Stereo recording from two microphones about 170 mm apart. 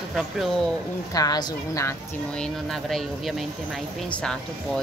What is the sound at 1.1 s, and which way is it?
Speech, 25° left (ahead or behind).